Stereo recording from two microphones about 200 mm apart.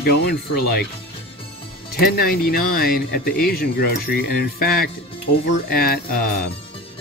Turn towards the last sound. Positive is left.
turn(degrees=50)  # may be behind; listen again after turning